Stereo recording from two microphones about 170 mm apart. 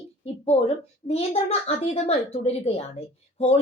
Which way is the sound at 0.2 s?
35° left (ahead or behind).